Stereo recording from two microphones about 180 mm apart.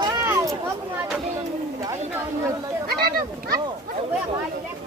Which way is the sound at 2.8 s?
55° right (ahead or behind).